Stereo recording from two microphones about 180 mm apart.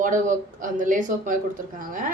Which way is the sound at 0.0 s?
45° right (ahead or behind).